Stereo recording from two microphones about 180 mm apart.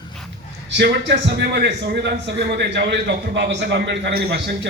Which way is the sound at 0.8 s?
75° right (ahead or behind).